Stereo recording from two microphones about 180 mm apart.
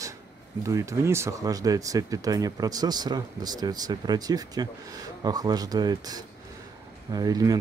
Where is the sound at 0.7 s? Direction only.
15° right (ahead or behind).